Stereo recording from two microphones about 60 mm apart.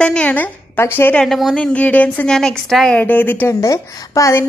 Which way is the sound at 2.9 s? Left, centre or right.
Left.